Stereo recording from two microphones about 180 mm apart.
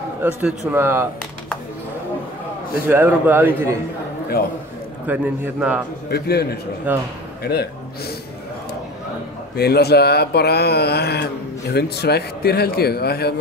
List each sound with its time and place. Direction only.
0.2 s a man's voice: 10° right (ahead or behind)
2.9 s a man's voice: 10° right (ahead or behind)
5.0 s a man's voice: 10° right (ahead or behind)
6.0 s speech: 65° left (ahead or behind)
6.9 s a man's voice: 10° right (ahead or behind)
7.4 s speech: 60° left (ahead or behind)
9.6 s speech: 65° left (ahead or behind)